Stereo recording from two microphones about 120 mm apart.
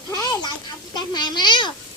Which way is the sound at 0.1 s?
35° left (ahead or behind).